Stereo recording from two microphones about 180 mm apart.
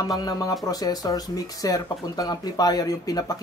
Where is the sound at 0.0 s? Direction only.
20° left (ahead or behind).